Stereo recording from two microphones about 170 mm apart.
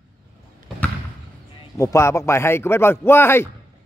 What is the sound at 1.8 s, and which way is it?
Speech, 15° left (ahead or behind).